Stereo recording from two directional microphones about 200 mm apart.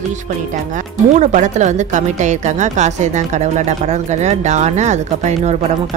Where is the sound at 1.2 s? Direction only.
35° right (ahead or behind).